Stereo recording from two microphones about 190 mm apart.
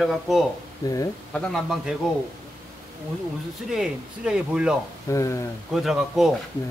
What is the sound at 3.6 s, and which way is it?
Speech, 5° right (ahead or behind).